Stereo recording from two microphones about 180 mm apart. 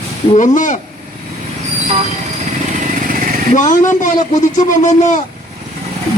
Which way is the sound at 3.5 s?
45° left (ahead or behind).